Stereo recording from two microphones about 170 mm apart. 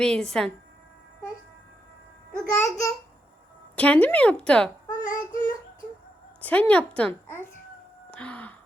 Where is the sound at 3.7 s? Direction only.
10° left (ahead or behind).